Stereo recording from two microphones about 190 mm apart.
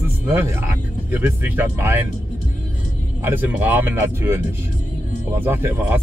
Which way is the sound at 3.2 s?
10° right (ahead or behind).